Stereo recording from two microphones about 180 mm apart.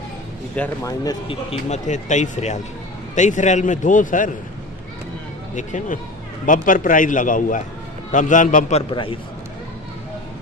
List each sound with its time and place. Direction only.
0.6 s speech: 20° left (ahead or behind)
1.3 s a man's voice: 35° left (ahead or behind)
5.5 s a man's voice: 40° left (ahead or behind)
8.9 s speech: 30° left (ahead or behind)